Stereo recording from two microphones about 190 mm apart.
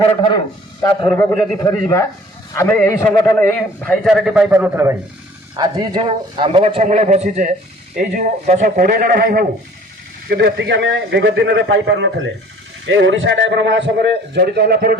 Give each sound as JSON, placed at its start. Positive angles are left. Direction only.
{"t": 0.0, "sound": "a man's voice", "side_deg": 25}
{"t": 5.5, "sound": "a man's voice", "side_deg": -20}
{"t": 13.1, "sound": "a man's voice", "side_deg": -75}